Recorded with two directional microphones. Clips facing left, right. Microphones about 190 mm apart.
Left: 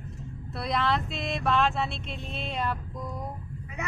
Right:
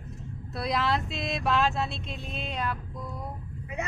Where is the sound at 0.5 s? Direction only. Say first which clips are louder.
Even; centre (ahead or behind).